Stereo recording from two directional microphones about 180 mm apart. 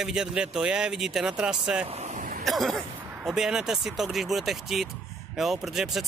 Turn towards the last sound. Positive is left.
turn(degrees=0)  # may be behind; listen again after turning